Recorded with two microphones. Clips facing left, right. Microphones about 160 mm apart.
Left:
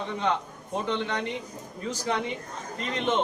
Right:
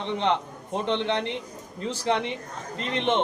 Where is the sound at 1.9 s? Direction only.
30° right (ahead or behind).